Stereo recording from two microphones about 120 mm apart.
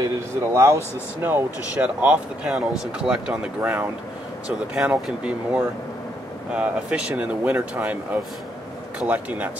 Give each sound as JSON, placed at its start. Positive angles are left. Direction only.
{"t": 0.0, "sound": "speech", "side_deg": -25}